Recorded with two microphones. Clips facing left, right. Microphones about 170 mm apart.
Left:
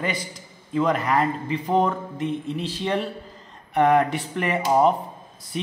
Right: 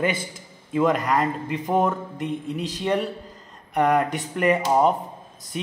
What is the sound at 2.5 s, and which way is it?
Speech, 45° right (ahead or behind).